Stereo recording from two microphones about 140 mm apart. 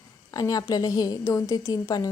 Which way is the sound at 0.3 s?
25° left (ahead or behind).